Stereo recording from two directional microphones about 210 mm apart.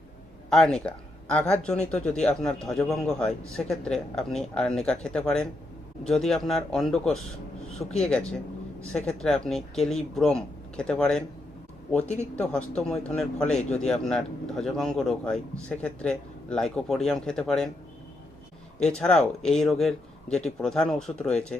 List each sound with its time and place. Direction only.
0.5 s speech: 5° left (ahead or behind)
12.0 s speech: 35° left (ahead or behind)
12.4 s speech: 5° left (ahead or behind)
18.9 s speech: 5° left (ahead or behind)